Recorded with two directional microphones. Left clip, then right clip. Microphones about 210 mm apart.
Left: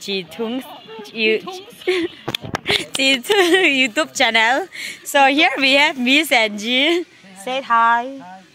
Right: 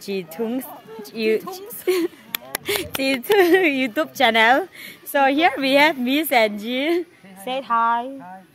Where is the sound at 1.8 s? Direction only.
10° right (ahead or behind).